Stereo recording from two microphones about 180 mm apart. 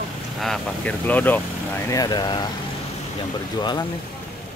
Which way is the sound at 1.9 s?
20° left (ahead or behind).